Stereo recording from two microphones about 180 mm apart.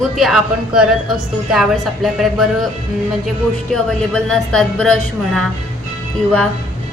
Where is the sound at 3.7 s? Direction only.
5° left (ahead or behind).